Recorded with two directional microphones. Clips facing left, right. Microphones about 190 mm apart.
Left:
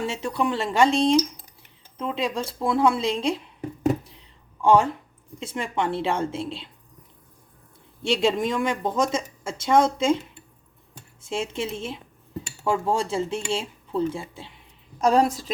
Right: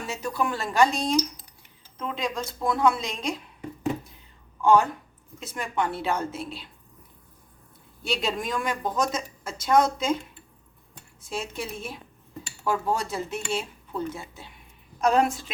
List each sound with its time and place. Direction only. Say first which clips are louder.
0.0 s speech: left 3 dB; 25° left (ahead or behind)
4.6 s speech: left 2 dB; 25° left (ahead or behind)
8.0 s speech: left 7 dB; 25° left (ahead or behind)
11.2 s speech: left 5 dB; 25° left (ahead or behind)